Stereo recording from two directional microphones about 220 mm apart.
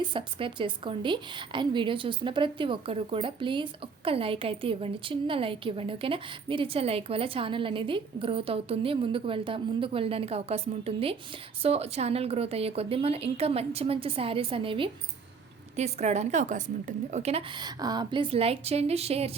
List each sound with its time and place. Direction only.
0.1 s a woman's voice: 25° right (ahead or behind)